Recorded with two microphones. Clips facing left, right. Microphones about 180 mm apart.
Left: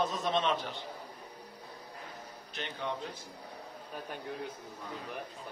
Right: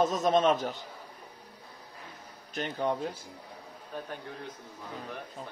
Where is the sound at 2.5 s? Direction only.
45° right (ahead or behind).